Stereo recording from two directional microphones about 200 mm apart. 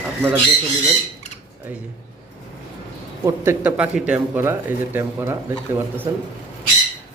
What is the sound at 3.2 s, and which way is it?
Speech, 10° right (ahead or behind).